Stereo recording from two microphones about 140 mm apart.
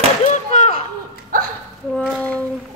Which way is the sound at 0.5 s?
60° left (ahead or behind).